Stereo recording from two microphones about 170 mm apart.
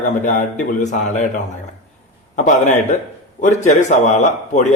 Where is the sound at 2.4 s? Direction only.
45° left (ahead or behind).